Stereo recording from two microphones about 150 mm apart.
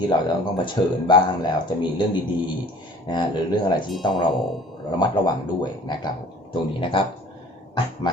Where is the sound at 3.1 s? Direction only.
30° left (ahead or behind).